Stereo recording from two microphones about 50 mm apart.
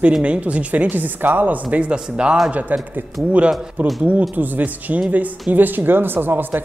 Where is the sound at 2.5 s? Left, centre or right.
Right.